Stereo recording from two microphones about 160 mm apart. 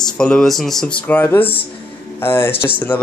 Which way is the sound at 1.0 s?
15° left (ahead or behind).